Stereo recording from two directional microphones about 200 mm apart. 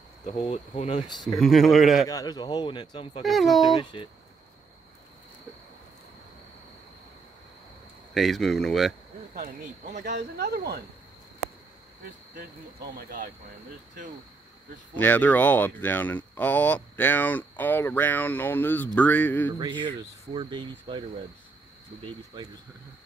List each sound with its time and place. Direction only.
0.2 s speech: 30° left (ahead or behind)
1.4 s speech: centre (ahead or behind)
2.0 s speech: 20° left (ahead or behind)
3.3 s speech: centre (ahead or behind)
3.6 s speech: 20° left (ahead or behind)
8.1 s speech: centre (ahead or behind)
9.3 s speech: 40° right (ahead or behind)
10.1 s speech: 50° right (ahead or behind)
12.4 s speech: 50° right (ahead or behind)
15.0 s speech: 10° left (ahead or behind)
20.0 s speech: 25° right (ahead or behind)